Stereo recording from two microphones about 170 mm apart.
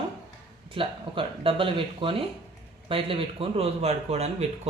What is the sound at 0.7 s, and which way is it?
Speech, 30° right (ahead or behind).